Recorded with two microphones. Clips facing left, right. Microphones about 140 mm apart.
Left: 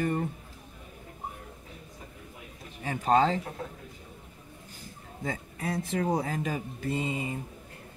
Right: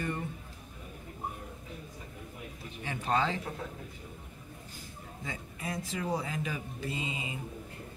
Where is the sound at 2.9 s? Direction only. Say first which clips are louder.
Left 6 dB; 40° left (ahead or behind).